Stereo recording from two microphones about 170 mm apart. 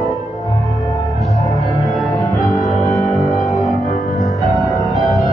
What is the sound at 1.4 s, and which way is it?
Music, centre (ahead or behind).